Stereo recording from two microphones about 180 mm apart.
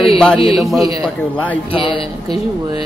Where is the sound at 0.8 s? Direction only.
20° right (ahead or behind).